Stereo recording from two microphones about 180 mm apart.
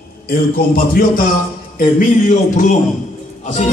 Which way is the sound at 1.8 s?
45° left (ahead or behind).